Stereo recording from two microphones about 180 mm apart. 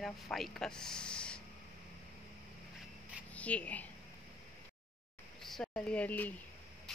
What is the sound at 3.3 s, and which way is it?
Speech, 5° left (ahead or behind).